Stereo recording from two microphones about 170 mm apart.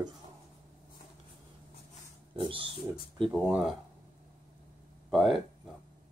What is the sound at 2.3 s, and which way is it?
Speech, 30° right (ahead or behind).